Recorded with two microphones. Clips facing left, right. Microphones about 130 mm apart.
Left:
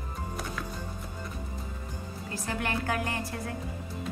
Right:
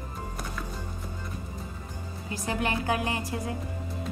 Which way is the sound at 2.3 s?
15° right (ahead or behind).